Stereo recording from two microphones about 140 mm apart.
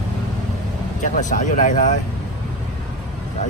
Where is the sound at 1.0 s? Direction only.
60° left (ahead or behind).